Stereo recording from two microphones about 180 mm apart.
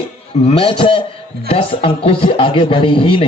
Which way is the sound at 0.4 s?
30° left (ahead or behind).